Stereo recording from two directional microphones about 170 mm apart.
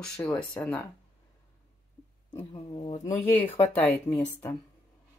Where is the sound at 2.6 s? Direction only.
25° left (ahead or behind).